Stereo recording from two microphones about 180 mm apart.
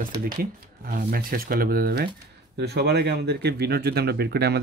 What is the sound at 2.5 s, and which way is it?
Speech, 70° right (ahead or behind).